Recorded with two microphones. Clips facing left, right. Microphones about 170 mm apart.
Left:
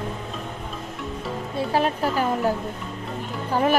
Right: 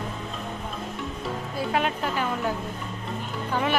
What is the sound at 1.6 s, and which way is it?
Speech, 35° left (ahead or behind).